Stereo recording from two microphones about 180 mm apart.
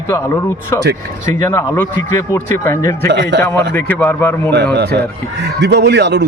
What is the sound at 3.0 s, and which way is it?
Speech, 75° right (ahead or behind).